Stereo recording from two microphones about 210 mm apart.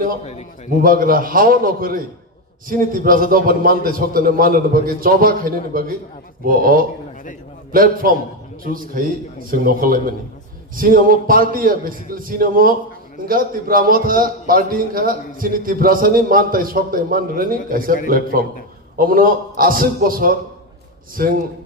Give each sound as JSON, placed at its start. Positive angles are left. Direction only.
{"t": 0.2, "sound": "a man's voice", "side_deg": 30}
{"t": 0.7, "sound": "a man's voice", "side_deg": -40}